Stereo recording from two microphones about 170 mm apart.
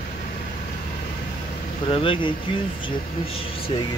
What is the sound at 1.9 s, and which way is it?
Speech, 30° left (ahead or behind).